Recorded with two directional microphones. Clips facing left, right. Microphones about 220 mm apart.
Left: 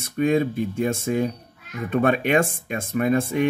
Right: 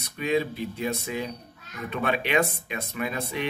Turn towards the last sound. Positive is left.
turn(degrees=50)  # may be behind; listen again after turning